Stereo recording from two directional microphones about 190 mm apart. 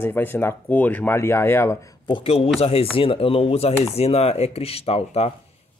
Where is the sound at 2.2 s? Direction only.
30° left (ahead or behind).